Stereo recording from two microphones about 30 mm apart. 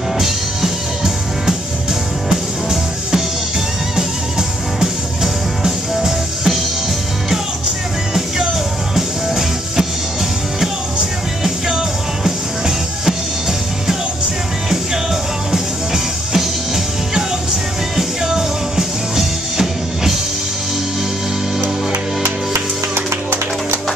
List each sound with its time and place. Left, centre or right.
0.2 s music: centre
3.9 s music: centre
8.9 s music: centre
11.7 s music: centre
17.9 s music: centre